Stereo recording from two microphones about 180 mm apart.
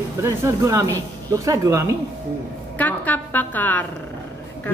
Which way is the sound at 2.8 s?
10° left (ahead or behind).